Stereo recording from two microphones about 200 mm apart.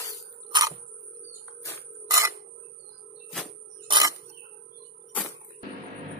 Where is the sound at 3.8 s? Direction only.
20° right (ahead or behind).